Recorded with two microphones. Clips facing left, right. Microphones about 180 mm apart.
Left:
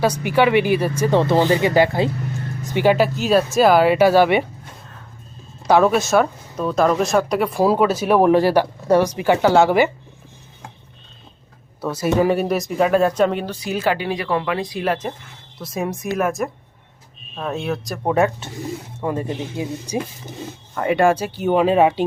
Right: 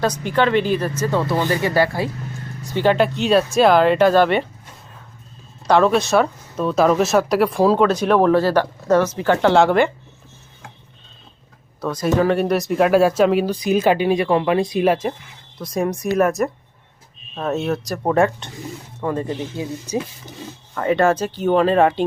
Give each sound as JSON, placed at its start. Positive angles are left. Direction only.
{"t": 0.0, "sound": "speech", "side_deg": 10}
{"t": 1.1, "sound": "speech", "side_deg": 25}
{"t": 5.6, "sound": "speech", "side_deg": 5}
{"t": 7.6, "sound": "speech", "side_deg": 10}
{"t": 11.8, "sound": "speech", "side_deg": 5}
{"t": 15.5, "sound": "speech", "side_deg": 0}